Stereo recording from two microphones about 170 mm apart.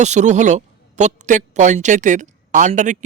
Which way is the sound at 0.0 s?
45° right (ahead or behind).